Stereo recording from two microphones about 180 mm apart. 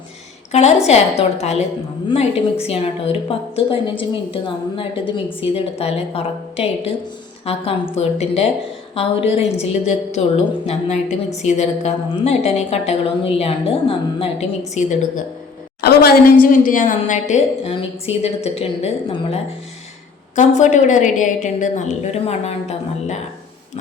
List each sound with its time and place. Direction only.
0.5 s a woman's voice: 35° left (ahead or behind)
15.8 s a woman's voice: 55° left (ahead or behind); by 23.1 s 35° left (ahead or behind)